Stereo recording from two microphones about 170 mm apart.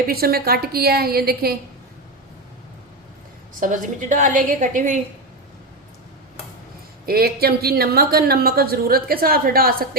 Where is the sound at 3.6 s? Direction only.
50° right (ahead or behind).